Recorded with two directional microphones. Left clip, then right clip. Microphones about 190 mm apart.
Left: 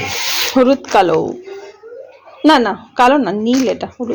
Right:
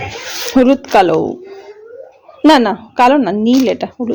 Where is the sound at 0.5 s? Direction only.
20° right (ahead or behind).